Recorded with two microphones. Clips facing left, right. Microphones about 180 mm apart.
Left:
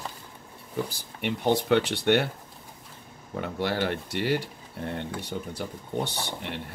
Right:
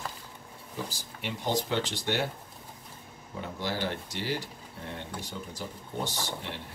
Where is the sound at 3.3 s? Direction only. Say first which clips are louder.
Left 6 dB; 60° left (ahead or behind).